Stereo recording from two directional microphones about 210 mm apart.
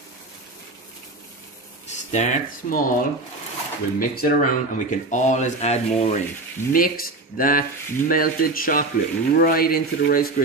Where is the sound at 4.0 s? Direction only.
45° left (ahead or behind).